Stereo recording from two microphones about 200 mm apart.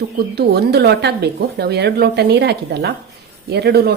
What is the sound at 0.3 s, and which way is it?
Speech, 55° right (ahead or behind).